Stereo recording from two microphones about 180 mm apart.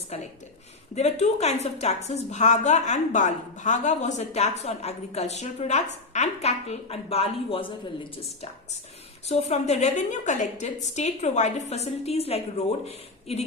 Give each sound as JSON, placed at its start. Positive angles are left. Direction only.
{"t": 0.1, "sound": "a woman's voice", "side_deg": 35}
{"t": 9.2, "sound": "a woman's voice", "side_deg": 35}